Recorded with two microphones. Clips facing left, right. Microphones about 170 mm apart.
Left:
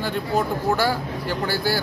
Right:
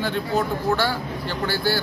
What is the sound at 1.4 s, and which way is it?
Speech, 40° left (ahead or behind).